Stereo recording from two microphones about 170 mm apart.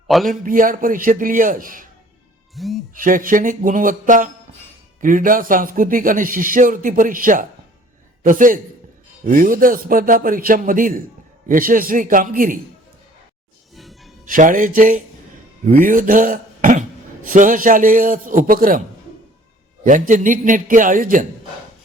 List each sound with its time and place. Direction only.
0.3 s speech: 55° right (ahead or behind)
2.6 s speech: centre (ahead or behind)
2.9 s a man's voice: 55° right (ahead or behind)
13.7 s music: centre (ahead or behind)
14.3 s speech: 50° right (ahead or behind)
19.8 s speech: 50° right (ahead or behind)